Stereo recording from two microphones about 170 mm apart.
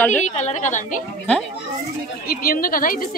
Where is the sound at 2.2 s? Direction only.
60° left (ahead or behind).